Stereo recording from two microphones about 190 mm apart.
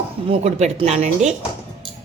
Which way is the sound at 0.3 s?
35° right (ahead or behind).